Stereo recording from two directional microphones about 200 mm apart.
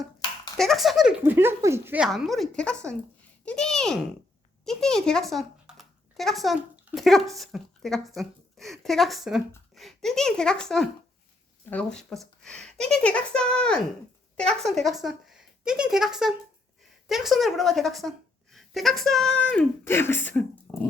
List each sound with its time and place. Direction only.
0.5 s speech: centre (ahead or behind)